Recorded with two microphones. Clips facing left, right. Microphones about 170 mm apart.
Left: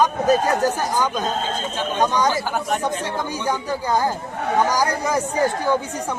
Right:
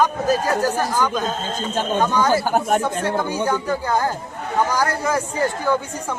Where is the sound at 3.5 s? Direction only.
15° left (ahead or behind).